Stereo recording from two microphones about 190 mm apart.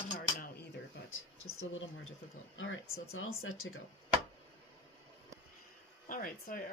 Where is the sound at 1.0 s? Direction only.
90° left.